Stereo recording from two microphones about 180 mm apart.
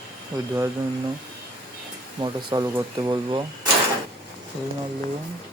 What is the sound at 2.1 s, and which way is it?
Speech, 25° right (ahead or behind).